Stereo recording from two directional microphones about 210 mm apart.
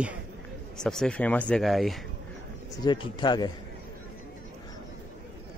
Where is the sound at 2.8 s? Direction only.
20° left (ahead or behind).